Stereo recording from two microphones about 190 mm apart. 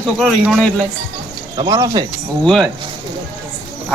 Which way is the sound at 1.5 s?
20° right (ahead or behind).